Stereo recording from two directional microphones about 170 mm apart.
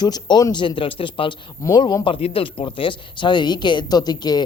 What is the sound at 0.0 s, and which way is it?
Speech, 25° left (ahead or behind).